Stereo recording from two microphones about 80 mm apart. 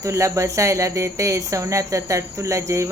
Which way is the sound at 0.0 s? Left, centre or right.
Right.